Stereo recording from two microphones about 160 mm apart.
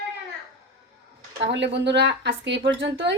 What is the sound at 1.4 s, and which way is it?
A woman's voice, 90° right.